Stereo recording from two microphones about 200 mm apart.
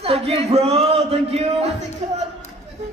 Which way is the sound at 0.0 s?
30° right (ahead or behind).